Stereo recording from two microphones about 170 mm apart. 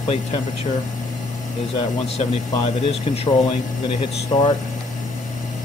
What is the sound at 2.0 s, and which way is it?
Speech, 35° left (ahead or behind).